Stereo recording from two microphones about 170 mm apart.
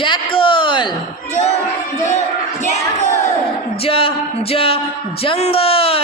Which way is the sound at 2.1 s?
45° left (ahead or behind).